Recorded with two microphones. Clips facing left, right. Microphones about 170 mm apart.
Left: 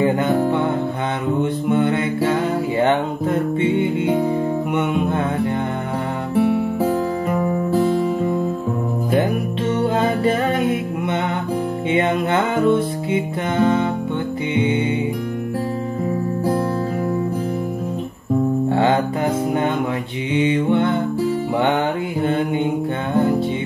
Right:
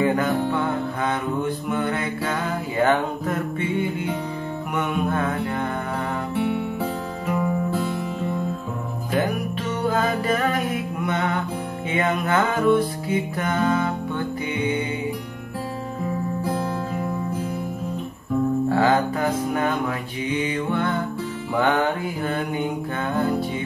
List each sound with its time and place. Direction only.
0.0 s music: 25° left (ahead or behind)
1.4 s mantra: 25° left (ahead or behind)
2.8 s music: 25° left (ahead or behind)
6.3 s music: 35° left (ahead or behind)
9.8 s music: 25° left (ahead or behind)
18.7 s music: 25° left (ahead or behind)
21.5 s mantra: 25° left (ahead or behind)